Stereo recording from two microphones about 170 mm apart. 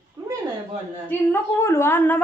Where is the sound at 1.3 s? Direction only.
15° left (ahead or behind).